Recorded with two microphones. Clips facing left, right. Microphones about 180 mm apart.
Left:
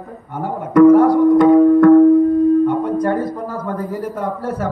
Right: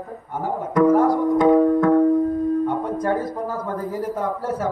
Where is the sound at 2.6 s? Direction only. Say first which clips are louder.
Left 6 dB; 65° left (ahead or behind).